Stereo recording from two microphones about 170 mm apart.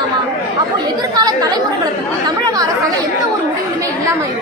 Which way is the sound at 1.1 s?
25° right (ahead or behind).